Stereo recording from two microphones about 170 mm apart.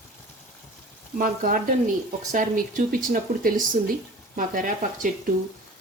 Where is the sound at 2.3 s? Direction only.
50° right (ahead or behind).